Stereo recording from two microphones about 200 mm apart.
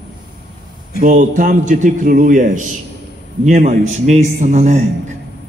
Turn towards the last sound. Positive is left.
turn(degrees=-35)  # may be behind; listen again after turning